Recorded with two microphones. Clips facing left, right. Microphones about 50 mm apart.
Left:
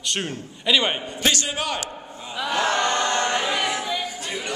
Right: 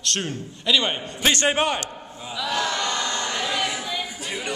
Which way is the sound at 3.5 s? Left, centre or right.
Centre.